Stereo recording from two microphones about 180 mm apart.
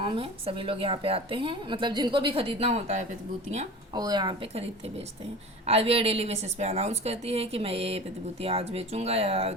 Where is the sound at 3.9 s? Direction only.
25° right (ahead or behind).